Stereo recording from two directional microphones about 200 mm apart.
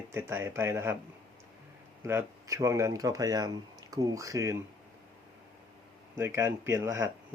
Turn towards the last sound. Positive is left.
turn(degrees=-15)  # may be behind; listen again after turning